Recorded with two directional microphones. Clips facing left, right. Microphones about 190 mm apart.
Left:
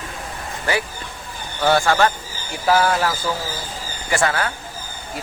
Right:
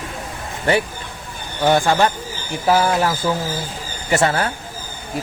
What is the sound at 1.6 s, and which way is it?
Speech, 15° right (ahead or behind).